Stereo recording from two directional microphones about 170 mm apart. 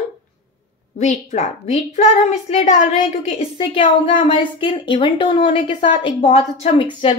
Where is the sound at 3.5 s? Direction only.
30° left (ahead or behind).